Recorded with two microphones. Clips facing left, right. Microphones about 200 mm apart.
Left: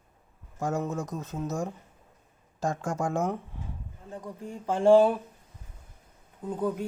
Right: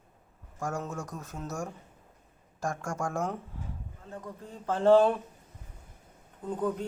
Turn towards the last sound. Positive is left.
turn(degrees=10)  # may be behind; listen again after turning